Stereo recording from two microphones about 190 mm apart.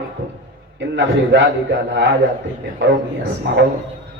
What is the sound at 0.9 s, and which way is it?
Speech, 70° right (ahead or behind).